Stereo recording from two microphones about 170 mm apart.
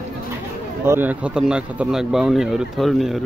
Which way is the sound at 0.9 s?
10° right (ahead or behind).